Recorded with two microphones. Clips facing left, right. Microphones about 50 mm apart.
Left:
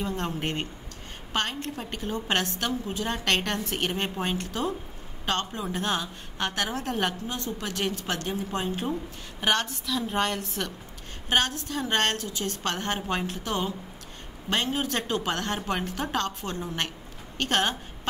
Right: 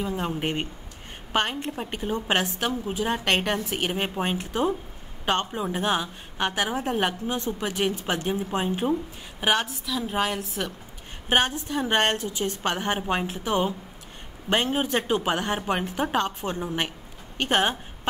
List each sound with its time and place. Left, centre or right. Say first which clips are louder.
0.0 s a woman's voice: right 2 dB; centre
11.2 s a woman's voice: right 3 dB; right